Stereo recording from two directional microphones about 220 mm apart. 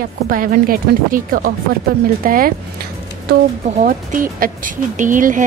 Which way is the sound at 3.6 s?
35° right (ahead or behind).